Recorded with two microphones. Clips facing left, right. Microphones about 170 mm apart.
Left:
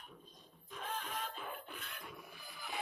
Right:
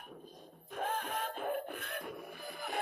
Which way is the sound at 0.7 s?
55° right (ahead or behind).